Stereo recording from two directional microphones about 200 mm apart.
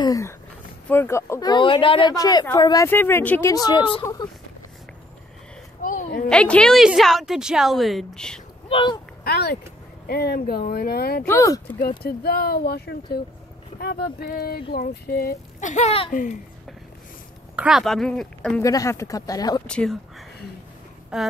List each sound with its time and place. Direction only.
0.0 s a sound: 15° left (ahead or behind)
0.8 s speech: 10° left (ahead or behind)
5.8 s a sound: 40° left (ahead or behind)
6.2 s a woman's voice: 5° left (ahead or behind)
8.6 s speech: 25° left (ahead or behind)
9.2 s speech: 50° left (ahead or behind)
11.2 s speech: 15° left (ahead or behind)
12.0 s speech: 50° left (ahead or behind)
17.6 s a woman's voice: centre (ahead or behind)
18.6 s speech: 15° left (ahead or behind)
19.6 s a woman's voice: 5° left (ahead or behind)